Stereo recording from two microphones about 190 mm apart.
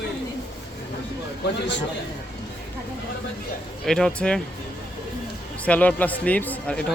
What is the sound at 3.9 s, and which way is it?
Speech, 5° left (ahead or behind).